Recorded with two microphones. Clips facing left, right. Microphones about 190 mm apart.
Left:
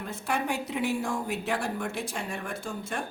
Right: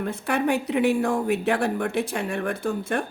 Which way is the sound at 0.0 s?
60° right (ahead or behind).